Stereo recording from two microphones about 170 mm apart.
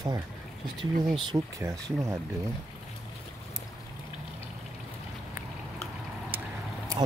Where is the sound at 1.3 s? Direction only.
20° right (ahead or behind).